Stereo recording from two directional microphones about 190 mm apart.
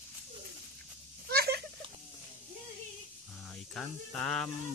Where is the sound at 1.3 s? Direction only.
55° right (ahead or behind).